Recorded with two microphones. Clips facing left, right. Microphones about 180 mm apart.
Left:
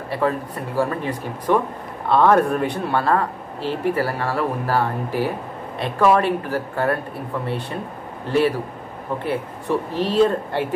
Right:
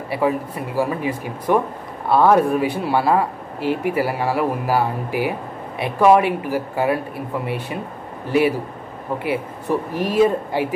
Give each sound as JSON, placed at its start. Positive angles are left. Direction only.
{"t": 0.1, "sound": "speech", "side_deg": -10}